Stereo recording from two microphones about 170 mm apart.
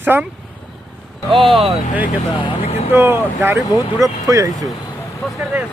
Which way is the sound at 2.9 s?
15° right (ahead or behind).